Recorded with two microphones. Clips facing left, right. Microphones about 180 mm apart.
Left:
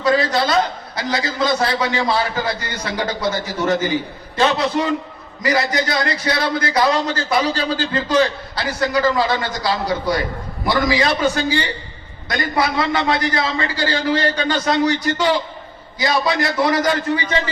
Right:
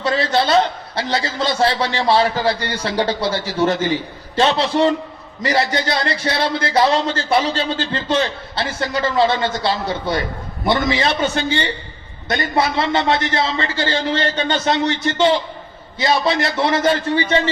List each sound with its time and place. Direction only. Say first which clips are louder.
0.0 s a man's voice: left 1 dB; 30° right (ahead or behind)